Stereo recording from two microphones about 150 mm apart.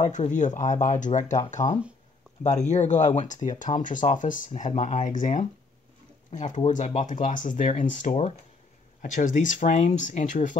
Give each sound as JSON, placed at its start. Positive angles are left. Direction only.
{"t": 0.0, "sound": "speech", "side_deg": 55}
{"t": 1.6, "sound": "speech", "side_deg": 25}
{"t": 2.4, "sound": "speech", "side_deg": 50}
{"t": 7.1, "sound": "speech", "side_deg": 60}